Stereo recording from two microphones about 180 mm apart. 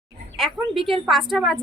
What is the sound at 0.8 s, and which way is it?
Speech, centre (ahead or behind).